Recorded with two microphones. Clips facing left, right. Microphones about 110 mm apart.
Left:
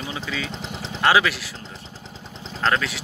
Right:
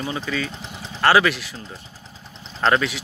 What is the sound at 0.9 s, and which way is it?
Speech, 10° left (ahead or behind).